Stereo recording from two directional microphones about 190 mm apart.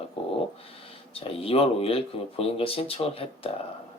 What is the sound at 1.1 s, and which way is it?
Speech, 30° left (ahead or behind).